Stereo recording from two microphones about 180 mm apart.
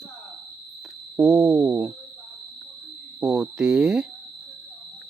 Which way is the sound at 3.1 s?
5° right (ahead or behind).